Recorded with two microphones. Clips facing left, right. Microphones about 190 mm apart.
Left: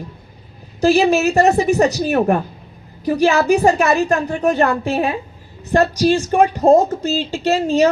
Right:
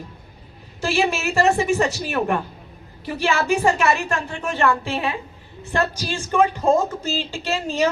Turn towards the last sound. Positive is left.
turn(degrees=40)  # may be behind; listen again after turning